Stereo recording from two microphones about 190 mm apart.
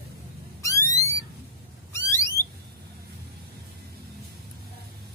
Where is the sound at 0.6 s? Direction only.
15° left (ahead or behind).